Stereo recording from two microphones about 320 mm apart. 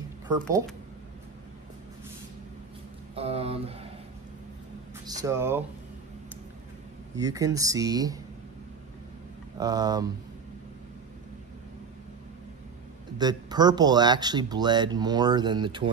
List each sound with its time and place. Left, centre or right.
3.2 s speech: centre
5.0 s speech: centre
7.2 s speech: centre
9.6 s speech: centre
13.2 s speech: centre